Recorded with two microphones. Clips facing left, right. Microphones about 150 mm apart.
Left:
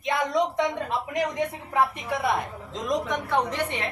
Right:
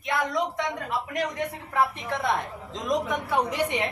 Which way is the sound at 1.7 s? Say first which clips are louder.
Even; 15° left (ahead or behind).